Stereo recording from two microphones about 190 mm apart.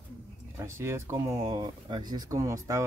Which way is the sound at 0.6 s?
15° right (ahead or behind).